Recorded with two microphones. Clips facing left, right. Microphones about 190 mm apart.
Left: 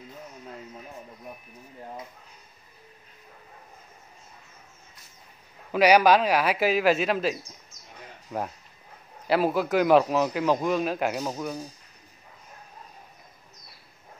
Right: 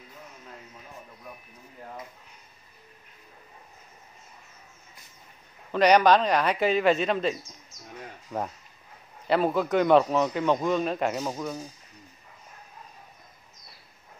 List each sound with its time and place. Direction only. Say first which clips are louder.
5.7 s a man's voice: left 1 dB; 5° left (ahead or behind)